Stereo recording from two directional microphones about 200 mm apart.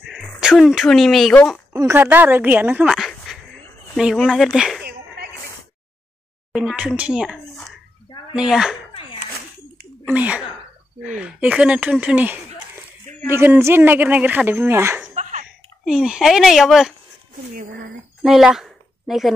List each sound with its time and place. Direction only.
0.0 s speech: 5° right (ahead or behind)
1.7 s speech: 10° right (ahead or behind)
4.8 s a sound: 50° right (ahead or behind)
6.5 s speech: 5° right (ahead or behind)
10.0 s speech: 5° right (ahead or behind)
18.2 s a woman's voice: centre (ahead or behind)